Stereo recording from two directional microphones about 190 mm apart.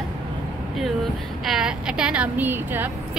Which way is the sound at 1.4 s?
5° right (ahead or behind).